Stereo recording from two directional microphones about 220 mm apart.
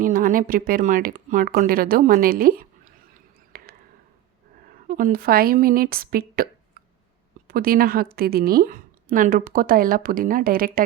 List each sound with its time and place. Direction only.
0.0 s a woman's voice: 40° right (ahead or behind)
3.5 s a sound: 45° right (ahead or behind)
4.9 s a woman's voice: 40° right (ahead or behind)